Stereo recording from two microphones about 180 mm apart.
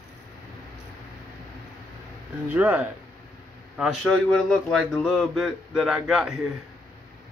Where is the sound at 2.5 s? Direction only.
10° right (ahead or behind).